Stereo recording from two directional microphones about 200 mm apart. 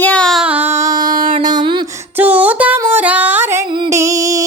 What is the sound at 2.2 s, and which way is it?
Music, 10° right (ahead or behind).